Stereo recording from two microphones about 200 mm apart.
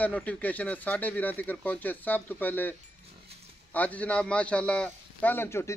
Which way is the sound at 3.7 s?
5° left (ahead or behind).